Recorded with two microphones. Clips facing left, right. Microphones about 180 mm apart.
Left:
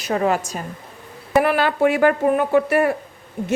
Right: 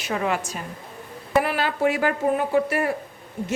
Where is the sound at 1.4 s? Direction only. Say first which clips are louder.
Left 5 dB; 60° left (ahead or behind).